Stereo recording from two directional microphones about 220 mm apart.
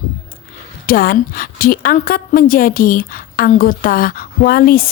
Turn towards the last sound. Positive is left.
turn(degrees=40)  # may be behind; listen again after turning